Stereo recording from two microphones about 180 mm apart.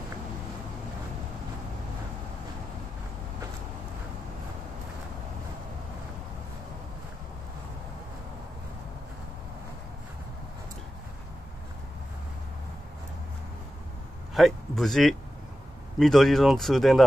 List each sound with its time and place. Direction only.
14.3 s speech: centre (ahead or behind)